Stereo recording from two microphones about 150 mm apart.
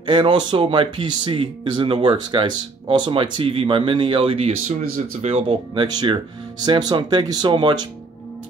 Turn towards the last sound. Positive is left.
turn(degrees=-35)  # may be behind; listen again after turning